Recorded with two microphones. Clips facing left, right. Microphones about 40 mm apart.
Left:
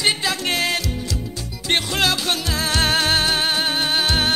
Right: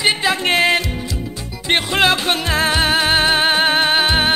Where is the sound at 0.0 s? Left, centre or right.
Right.